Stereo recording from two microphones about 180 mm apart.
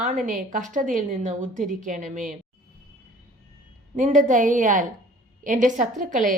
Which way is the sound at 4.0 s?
45° right (ahead or behind).